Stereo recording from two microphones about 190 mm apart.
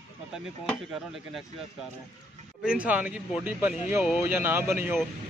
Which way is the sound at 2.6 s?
5° right (ahead or behind).